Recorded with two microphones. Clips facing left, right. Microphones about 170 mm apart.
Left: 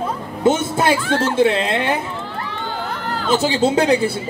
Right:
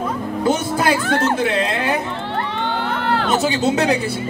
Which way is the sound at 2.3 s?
65° right (ahead or behind).